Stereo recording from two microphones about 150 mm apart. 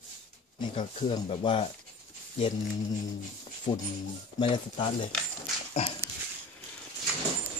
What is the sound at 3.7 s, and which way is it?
Speech, 40° left (ahead or behind).